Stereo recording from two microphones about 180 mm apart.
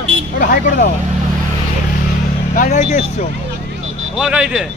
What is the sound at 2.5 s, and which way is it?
Speech, 40° left (ahead or behind).